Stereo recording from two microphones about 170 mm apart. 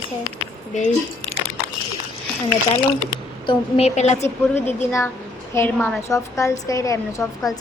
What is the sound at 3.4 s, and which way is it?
A woman's voice, 35° left (ahead or behind).